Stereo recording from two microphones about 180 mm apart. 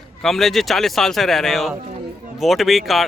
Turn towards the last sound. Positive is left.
turn(degrees=0)  # may be behind; listen again after turning